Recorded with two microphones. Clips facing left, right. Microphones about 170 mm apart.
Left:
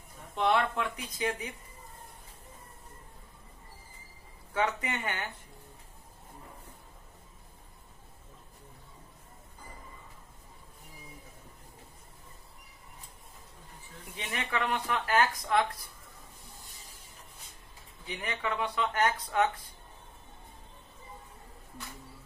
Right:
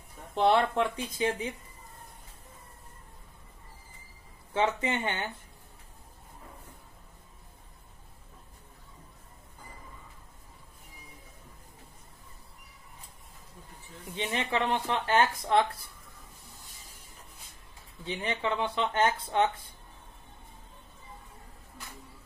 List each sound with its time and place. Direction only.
0.3 s speech: 35° right (ahead or behind)
4.6 s speech: 25° right (ahead or behind)
14.1 s speech: 25° right (ahead or behind)
18.0 s speech: 25° right (ahead or behind)